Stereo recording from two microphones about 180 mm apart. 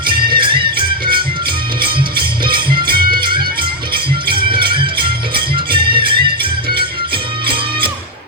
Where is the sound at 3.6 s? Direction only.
25° right (ahead or behind).